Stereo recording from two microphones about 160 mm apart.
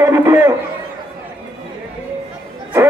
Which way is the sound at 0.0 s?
15° right (ahead or behind).